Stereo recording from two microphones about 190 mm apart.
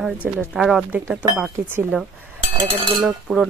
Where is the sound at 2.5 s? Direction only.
30° right (ahead or behind).